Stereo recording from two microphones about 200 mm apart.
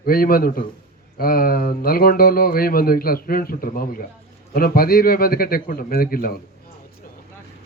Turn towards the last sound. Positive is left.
turn(degrees=50)  # may be behind; listen again after turning